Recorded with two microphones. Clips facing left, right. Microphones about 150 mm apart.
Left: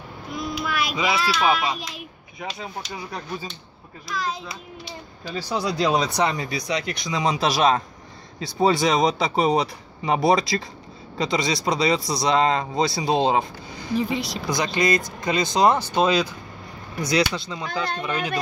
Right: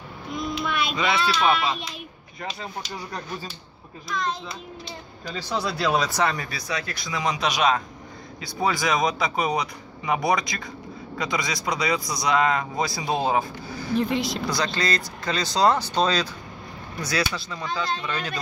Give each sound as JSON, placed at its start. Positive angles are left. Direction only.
{"t": 0.3, "sound": "a child's voice", "side_deg": 5}
{"t": 13.9, "sound": "speech", "side_deg": 0}
{"t": 14.5, "sound": "a child's voice", "side_deg": 15}
{"t": 17.6, "sound": "speech", "side_deg": 50}
{"t": 18.0, "sound": "a child's voice", "side_deg": 15}